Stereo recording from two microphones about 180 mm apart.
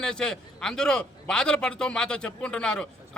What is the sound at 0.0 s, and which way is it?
A man's voice, 5° left (ahead or behind).